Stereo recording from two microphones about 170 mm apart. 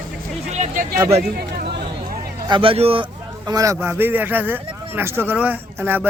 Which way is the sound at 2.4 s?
30° right (ahead or behind).